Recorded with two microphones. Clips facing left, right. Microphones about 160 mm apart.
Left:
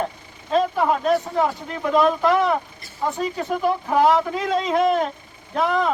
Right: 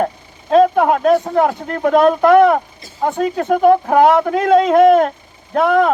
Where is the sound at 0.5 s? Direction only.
60° right (ahead or behind).